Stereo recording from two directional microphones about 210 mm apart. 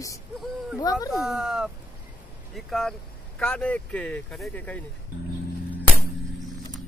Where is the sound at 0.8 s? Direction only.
15° left (ahead or behind).